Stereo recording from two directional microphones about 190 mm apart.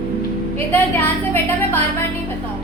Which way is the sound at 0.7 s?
10° left (ahead or behind).